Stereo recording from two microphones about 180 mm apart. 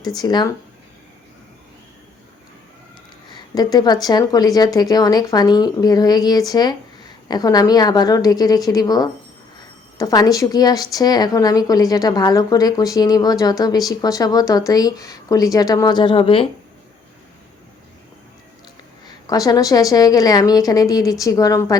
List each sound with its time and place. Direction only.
0.2 s speech: 25° left (ahead or behind)
3.3 s speech: 20° left (ahead or behind)
19.0 s speech: 20° left (ahead or behind)